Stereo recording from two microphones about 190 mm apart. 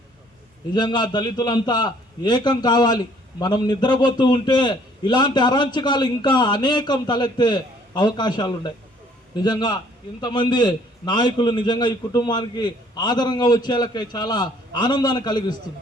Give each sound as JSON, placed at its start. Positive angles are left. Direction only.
{"t": 0.7, "sound": "a man's voice", "side_deg": 20}